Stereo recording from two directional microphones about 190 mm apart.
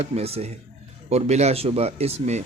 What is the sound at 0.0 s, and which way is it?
Speech, 30° right (ahead or behind).